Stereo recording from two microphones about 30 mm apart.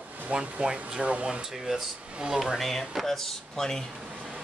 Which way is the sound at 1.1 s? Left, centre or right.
Right.